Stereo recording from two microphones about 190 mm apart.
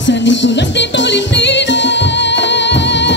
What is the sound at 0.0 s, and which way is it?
Music, 70° left (ahead or behind).